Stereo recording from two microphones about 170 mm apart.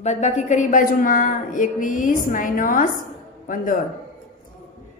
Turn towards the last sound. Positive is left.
turn(degrees=50)  # may be behind; listen again after turning